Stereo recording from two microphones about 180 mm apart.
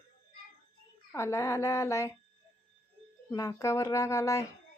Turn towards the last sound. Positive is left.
turn(degrees=15)  # may be behind; listen again after turning